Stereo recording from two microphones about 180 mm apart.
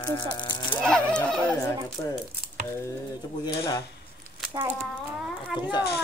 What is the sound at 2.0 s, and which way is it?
Speech, 15° left (ahead or behind).